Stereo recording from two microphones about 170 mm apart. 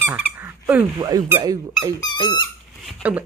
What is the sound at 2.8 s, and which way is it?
Speech, 10° right (ahead or behind).